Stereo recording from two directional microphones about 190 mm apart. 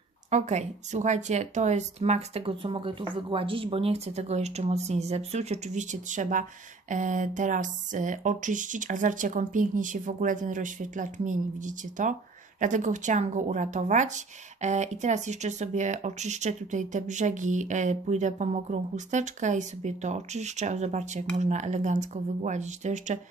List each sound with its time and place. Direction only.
0.3 s speech: 35° right (ahead or behind)